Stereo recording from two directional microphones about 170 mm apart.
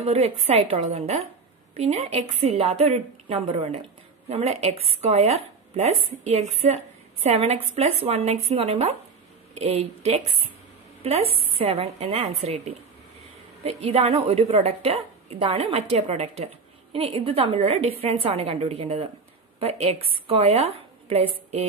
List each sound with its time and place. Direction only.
0.0 s a woman's voice: 40° right (ahead or behind)